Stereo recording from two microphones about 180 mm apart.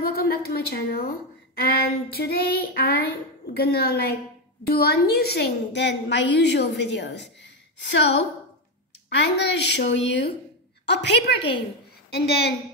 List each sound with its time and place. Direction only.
0.0 s a woman's voice: 60° left (ahead or behind)
9.1 s a woman's voice: 70° left (ahead or behind)